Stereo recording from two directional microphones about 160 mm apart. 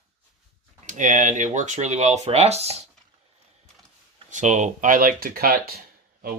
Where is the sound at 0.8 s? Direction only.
50° right (ahead or behind).